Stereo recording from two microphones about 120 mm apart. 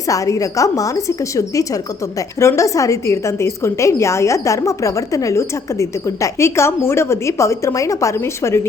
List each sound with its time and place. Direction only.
0.1 s a woman's voice: 25° left (ahead or behind)